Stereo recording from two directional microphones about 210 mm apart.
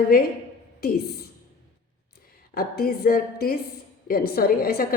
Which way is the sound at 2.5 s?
45° left (ahead or behind).